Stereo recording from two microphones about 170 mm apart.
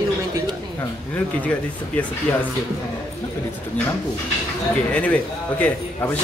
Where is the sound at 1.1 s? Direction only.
10° left (ahead or behind).